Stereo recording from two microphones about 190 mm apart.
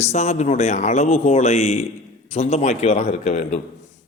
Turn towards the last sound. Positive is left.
turn(degrees=35)  # may be behind; listen again after turning